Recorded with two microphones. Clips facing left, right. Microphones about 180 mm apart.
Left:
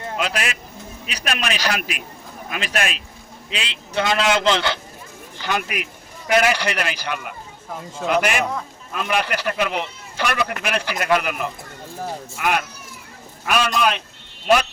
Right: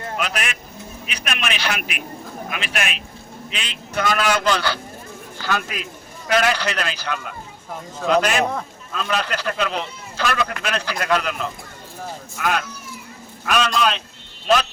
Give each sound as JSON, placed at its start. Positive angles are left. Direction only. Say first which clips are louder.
{"t": 0.2, "sound": "a man's voice", "louder": "left 3 dB", "side_deg": 30}
{"t": 13.5, "sound": "speech", "louder": "even", "side_deg": 10}